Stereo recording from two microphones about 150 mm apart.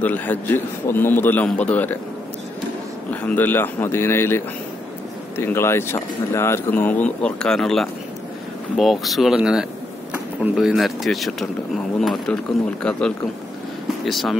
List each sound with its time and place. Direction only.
0.0 s a man's voice: 10° left (ahead or behind)
3.1 s a man's voice: 10° left (ahead or behind)
5.4 s a man's voice: 15° left (ahead or behind)
14.0 s speech: centre (ahead or behind)